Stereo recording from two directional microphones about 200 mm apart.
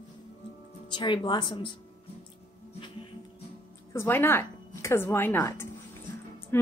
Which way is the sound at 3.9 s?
10° left (ahead or behind).